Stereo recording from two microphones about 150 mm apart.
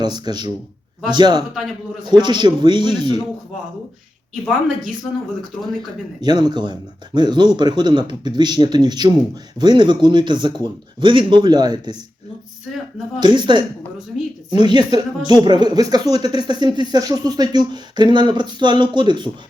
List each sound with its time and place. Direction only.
0.0 s speech: 30° right (ahead or behind)
1.5 s a man's voice: centre (ahead or behind)
2.1 s speech: 30° right (ahead or behind)
6.2 s speech: 30° right (ahead or behind)
13.1 s speech: 30° right (ahead or behind)